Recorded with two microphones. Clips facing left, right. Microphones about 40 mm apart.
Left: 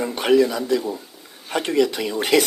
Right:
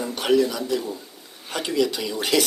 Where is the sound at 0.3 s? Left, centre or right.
Left.